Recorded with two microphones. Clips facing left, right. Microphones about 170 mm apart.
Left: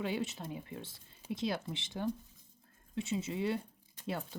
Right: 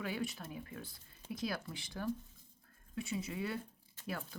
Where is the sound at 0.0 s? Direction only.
25° left (ahead or behind).